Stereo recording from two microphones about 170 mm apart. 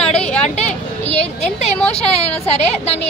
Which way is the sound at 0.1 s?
40° left (ahead or behind).